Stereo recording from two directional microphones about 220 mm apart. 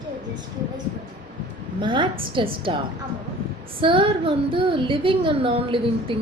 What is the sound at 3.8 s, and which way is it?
A woman's voice, 25° right (ahead or behind).